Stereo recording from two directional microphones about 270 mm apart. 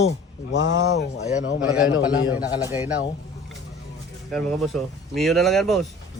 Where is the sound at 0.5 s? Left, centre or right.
Left.